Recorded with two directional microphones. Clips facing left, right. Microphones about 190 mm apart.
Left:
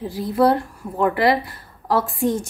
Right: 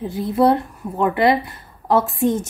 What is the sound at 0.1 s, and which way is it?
A woman's voice, 25° right (ahead or behind).